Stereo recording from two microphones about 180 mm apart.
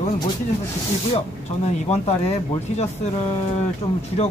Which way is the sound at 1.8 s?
35° left (ahead or behind).